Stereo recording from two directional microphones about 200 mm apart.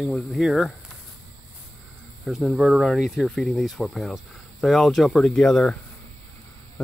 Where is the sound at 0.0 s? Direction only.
Centre (ahead or behind).